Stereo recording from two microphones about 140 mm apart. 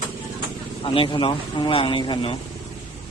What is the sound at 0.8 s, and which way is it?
Speech, 40° left (ahead or behind).